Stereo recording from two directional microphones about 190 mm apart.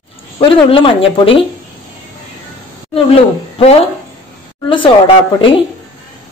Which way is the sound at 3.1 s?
30° left (ahead or behind).